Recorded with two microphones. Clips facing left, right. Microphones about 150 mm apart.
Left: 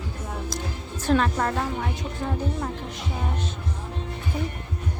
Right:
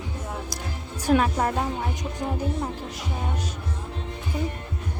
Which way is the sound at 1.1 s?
10° right (ahead or behind).